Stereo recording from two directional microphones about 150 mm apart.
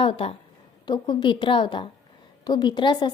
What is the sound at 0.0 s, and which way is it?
A woman's voice, 40° left (ahead or behind).